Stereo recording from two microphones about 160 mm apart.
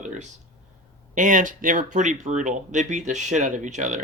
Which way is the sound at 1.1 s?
55° right (ahead or behind).